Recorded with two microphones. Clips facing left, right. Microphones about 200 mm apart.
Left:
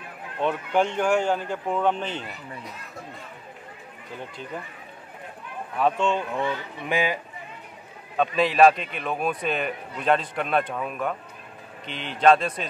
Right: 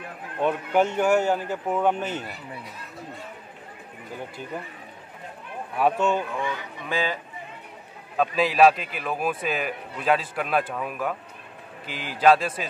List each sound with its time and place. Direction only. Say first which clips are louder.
0.4 s a man's voice: right 1 dB; 10° right (ahead or behind)
5.8 s a man's voice: right 1 dB; 10° right (ahead or behind)
6.4 s speech: left 2 dB; 15° left (ahead or behind)
8.2 s a man's voice: left 1 dB; centre (ahead or behind)